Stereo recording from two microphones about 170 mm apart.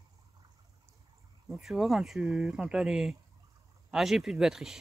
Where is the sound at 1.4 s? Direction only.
5° right (ahead or behind).